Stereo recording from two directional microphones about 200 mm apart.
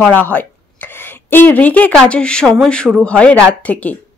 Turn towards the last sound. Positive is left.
turn(degrees=5)  # may be behind; listen again after turning